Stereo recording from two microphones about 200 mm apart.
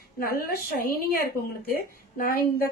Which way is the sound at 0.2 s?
45° left (ahead or behind).